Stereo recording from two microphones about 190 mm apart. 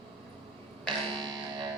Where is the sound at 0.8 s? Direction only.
25° right (ahead or behind).